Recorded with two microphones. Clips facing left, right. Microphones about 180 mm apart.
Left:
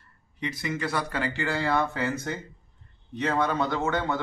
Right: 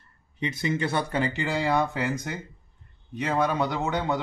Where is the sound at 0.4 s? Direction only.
25° right (ahead or behind).